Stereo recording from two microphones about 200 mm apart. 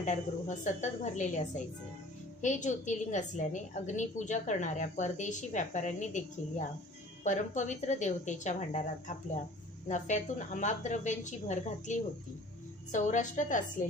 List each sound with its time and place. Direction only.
0.0 s a woman's voice: 35° left (ahead or behind)